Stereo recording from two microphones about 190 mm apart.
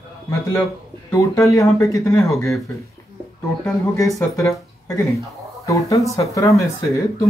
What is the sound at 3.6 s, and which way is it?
Speech, 15° left (ahead or behind).